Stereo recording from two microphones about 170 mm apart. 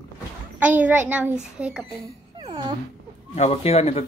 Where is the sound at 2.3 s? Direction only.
30° right (ahead or behind).